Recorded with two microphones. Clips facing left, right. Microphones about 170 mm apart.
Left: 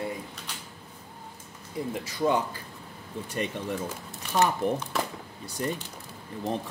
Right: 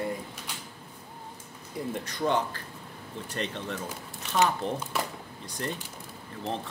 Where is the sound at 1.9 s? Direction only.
5° left (ahead or behind).